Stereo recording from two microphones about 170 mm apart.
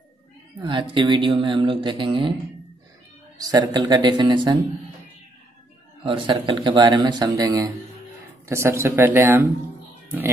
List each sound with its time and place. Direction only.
0.6 s speech: 30° right (ahead or behind)
3.3 s speech: 20° right (ahead or behind)
6.0 s speech: 30° right (ahead or behind); by 9.5 s 10° right (ahead or behind)